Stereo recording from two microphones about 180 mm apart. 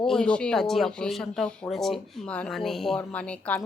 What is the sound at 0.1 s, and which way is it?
Speech, 5° left (ahead or behind).